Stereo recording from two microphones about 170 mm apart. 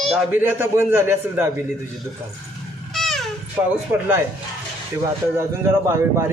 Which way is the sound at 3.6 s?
5° right (ahead or behind).